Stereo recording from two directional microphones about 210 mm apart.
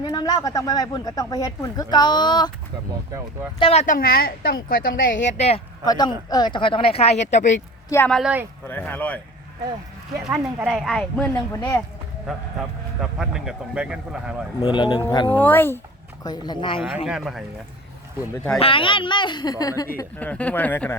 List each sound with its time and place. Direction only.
0.0 s speech: 20° left (ahead or behind)
3.6 s a woman's voice: 30° left (ahead or behind)
5.2 s speech: 30° left (ahead or behind)
5.8 s speech: 20° left (ahead or behind); by 7.6 s 35° left (ahead or behind)
7.9 s speech: 10° left (ahead or behind)
8.1 s speech: 5° right (ahead or behind)
8.6 s speech: 10° left (ahead or behind)
10.3 s speech: 5° right (ahead or behind); by 11.8 s 10° left (ahead or behind)
13.0 s speech: 5° right (ahead or behind)
14.6 s speech: 20° left (ahead or behind)
15.4 s speech: 10° left (ahead or behind)
17.1 s speech: centre (ahead or behind)
18.6 s speech: 25° left (ahead or behind); by 20.9 s 10° left (ahead or behind)